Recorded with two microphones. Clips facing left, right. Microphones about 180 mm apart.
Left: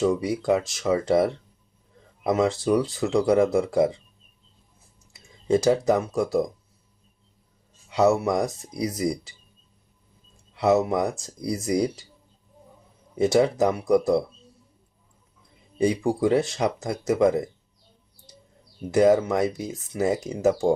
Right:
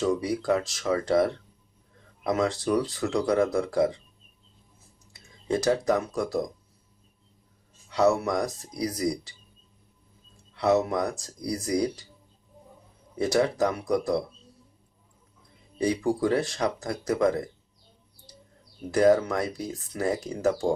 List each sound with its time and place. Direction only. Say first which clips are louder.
0.3 s speech: left 3 dB; 20° left (ahead or behind)
5.5 s speech: left 4 dB; 25° left (ahead or behind)
7.9 s speech: left 2 dB; 25° left (ahead or behind)
10.5 s speech: left 3 dB; 20° left (ahead or behind)
13.1 s speech: left 4 dB; 20° left (ahead or behind)
15.8 s speech: left 3 dB; 25° left (ahead or behind)
18.9 s speech: left 2 dB; 20° left (ahead or behind)